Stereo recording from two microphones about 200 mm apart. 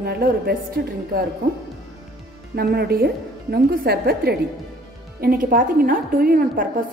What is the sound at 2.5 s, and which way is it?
A woman's voice, 50° right (ahead or behind).